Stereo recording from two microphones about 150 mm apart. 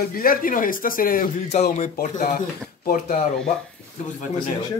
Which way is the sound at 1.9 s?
65° left (ahead or behind).